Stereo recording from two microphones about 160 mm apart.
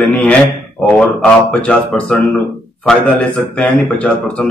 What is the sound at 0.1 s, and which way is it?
Speech, 10° left (ahead or behind).